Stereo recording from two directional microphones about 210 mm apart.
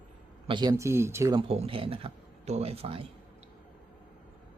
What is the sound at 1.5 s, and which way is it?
Speech, 25° right (ahead or behind).